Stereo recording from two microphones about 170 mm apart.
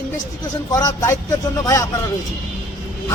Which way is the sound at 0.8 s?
20° left (ahead or behind).